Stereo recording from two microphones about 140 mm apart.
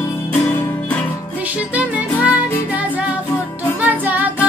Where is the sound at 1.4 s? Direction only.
10° right (ahead or behind).